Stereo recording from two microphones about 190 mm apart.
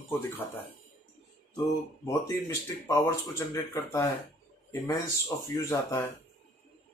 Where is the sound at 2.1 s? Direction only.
15° left (ahead or behind).